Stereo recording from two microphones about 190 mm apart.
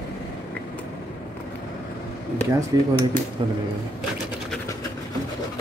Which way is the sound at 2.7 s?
20° right (ahead or behind).